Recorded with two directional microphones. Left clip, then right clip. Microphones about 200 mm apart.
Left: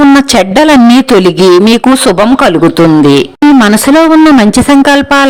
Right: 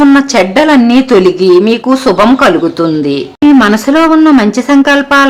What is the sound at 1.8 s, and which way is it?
Speech, 35° left (ahead or behind).